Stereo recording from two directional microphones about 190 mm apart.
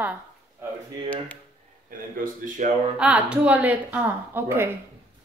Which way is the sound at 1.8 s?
45° right (ahead or behind).